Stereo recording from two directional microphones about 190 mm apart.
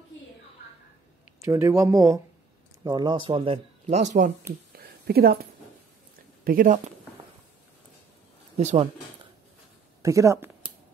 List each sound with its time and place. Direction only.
1.4 s speech: 15° right (ahead or behind); by 4.3 s 40° right (ahead or behind)
4.7 s a sound: 55° right (ahead or behind)
6.4 s speech: 50° right (ahead or behind)
8.5 s speech: 35° right (ahead or behind)
10.0 s speech: 15° right (ahead or behind)